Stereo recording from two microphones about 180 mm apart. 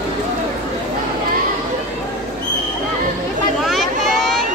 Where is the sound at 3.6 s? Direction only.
Centre (ahead or behind).